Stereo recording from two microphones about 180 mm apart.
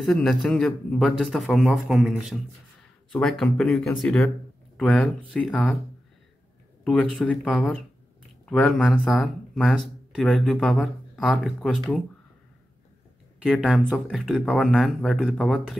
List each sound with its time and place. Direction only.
0.0 s speech: centre (ahead or behind)
6.8 s speech: 5° left (ahead or behind)
13.4 s speech: centre (ahead or behind)